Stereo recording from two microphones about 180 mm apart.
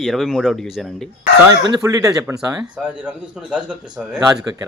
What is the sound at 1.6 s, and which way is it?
Speech, 20° right (ahead or behind).